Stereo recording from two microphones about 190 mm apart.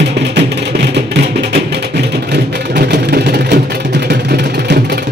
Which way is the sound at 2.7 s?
60° right (ahead or behind).